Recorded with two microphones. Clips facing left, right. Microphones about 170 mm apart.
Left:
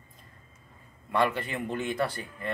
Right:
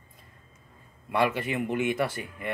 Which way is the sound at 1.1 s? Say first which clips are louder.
Right 1 dB; 10° right (ahead or behind).